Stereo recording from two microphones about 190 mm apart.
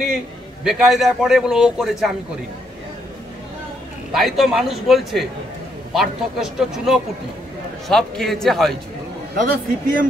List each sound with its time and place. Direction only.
0.7 s a man's voice: centre (ahead or behind)
4.1 s a man's voice: centre (ahead or behind)
9.3 s speech: 45° right (ahead or behind)